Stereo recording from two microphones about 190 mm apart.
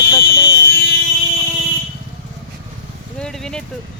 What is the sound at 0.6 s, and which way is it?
Vehicle, 60° left (ahead or behind).